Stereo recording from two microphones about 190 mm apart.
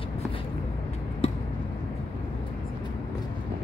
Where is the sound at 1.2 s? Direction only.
30° left (ahead or behind).